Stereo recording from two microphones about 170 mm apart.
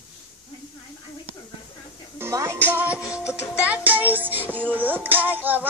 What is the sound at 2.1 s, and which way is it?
Music, 15° right (ahead or behind).